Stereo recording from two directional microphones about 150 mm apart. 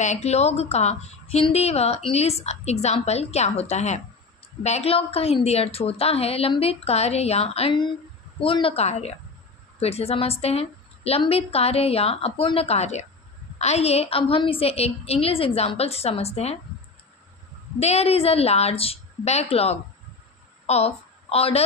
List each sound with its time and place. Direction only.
0.0 s a woman's voice: 50° left (ahead or behind)
17.7 s a woman's voice: 45° left (ahead or behind)